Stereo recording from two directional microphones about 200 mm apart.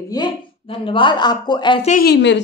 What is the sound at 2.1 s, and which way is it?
Speech, 60° left (ahead or behind).